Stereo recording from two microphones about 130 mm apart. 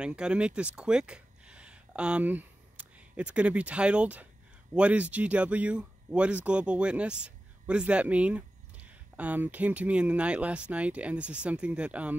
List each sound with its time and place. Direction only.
0.0 s speech: 5° right (ahead or behind)